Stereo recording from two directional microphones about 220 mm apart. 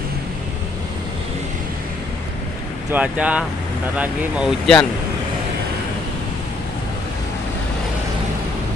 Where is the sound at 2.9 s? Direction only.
5° right (ahead or behind).